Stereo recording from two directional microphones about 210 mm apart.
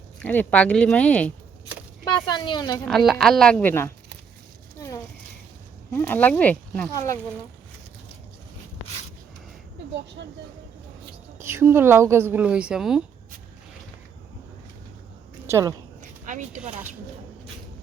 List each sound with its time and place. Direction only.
0.2 s speech: 5° left (ahead or behind)
2.0 s speech: 20° left (ahead or behind)
2.8 s a woman's voice: centre (ahead or behind)
5.9 s speech: 10° left (ahead or behind)
10.2 s speech: 55° right (ahead or behind)
11.3 s a woman's voice: 10° right (ahead or behind)
15.4 s a woman's voice: 10° right (ahead or behind)
16.0 s a sound: 35° right (ahead or behind)